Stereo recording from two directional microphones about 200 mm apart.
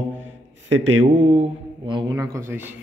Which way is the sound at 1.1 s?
40° right (ahead or behind).